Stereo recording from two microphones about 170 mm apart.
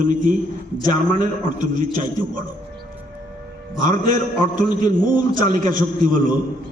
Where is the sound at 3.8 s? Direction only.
50° right (ahead or behind).